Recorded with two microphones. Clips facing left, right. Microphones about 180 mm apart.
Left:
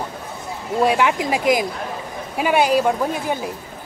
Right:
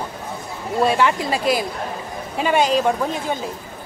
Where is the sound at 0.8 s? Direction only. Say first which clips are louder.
Even; 10° left (ahead or behind).